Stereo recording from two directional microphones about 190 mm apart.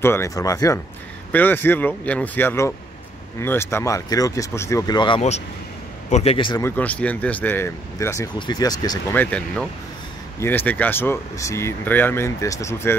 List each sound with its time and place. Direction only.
0.0 s speech: 15° left (ahead or behind)
6.0 s speech: 35° left (ahead or behind)
6.6 s speech: 10° left (ahead or behind)
9.1 s speech: 10° left (ahead or behind)